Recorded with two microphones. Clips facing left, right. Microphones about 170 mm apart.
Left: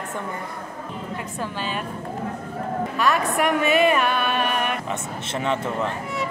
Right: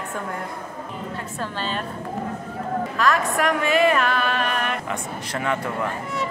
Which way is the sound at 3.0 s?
Centre (ahead or behind).